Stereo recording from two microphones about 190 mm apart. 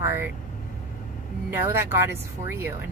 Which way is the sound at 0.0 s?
15° right (ahead or behind).